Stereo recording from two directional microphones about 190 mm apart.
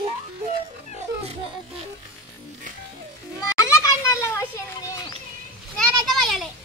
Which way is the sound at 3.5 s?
15° left (ahead or behind).